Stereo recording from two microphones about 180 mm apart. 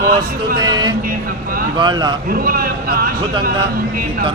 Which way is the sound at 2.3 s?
55° right (ahead or behind).